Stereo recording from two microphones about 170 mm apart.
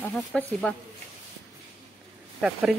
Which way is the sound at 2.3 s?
5° right (ahead or behind).